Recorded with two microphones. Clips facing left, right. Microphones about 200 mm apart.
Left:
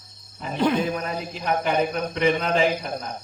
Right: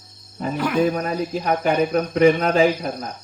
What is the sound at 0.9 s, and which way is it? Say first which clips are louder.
Speech: right 6 dB; 40° right (ahead or behind).